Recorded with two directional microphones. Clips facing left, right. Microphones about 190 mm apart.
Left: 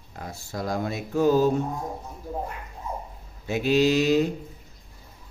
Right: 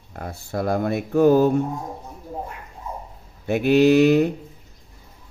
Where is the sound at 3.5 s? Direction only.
60° right (ahead or behind).